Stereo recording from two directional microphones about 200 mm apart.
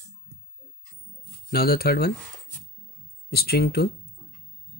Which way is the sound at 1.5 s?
50° left (ahead or behind).